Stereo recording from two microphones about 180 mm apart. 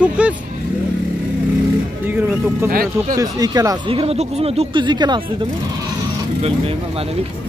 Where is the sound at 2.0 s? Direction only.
10° right (ahead or behind).